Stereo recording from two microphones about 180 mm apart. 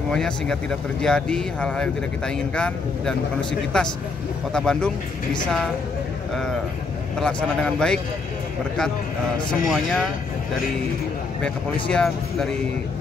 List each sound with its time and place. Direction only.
0.1 s speech: 5° left (ahead or behind)
7.2 s speech: 5° left (ahead or behind)
9.5 s speech: centre (ahead or behind)
11.9 s speech: 5° left (ahead or behind)